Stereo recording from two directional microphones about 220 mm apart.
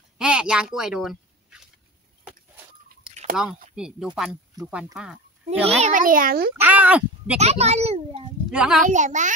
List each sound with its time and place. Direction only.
0.2 s a sound: 5° right (ahead or behind)
3.4 s speech: 5° right (ahead or behind)
5.6 s a child's voice: 30° right (ahead or behind)
6.5 s speech: 10° right (ahead or behind)
7.3 s a child's voice: 30° right (ahead or behind)
8.5 s speech: 5° right (ahead or behind)
8.8 s a child's voice: 35° right (ahead or behind)